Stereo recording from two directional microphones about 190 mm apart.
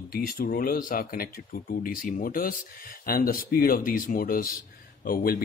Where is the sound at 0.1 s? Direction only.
50° left (ahead or behind).